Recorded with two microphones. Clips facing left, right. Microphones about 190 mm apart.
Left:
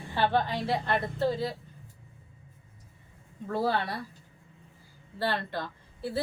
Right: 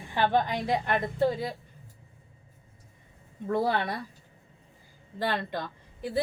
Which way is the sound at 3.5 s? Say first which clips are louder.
Right 2 dB; 15° right (ahead or behind).